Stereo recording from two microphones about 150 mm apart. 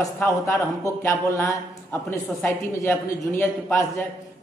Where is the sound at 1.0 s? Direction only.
20° left (ahead or behind).